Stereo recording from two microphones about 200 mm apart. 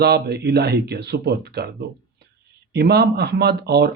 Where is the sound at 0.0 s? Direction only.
55° right (ahead or behind).